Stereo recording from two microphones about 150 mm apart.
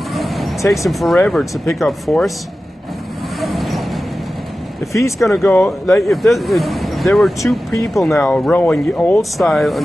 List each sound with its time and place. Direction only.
0.1 s speech: centre (ahead or behind)
3.3 s vehicle: centre (ahead or behind)
4.9 s speech: 20° left (ahead or behind)
5.3 s speech: centre (ahead or behind)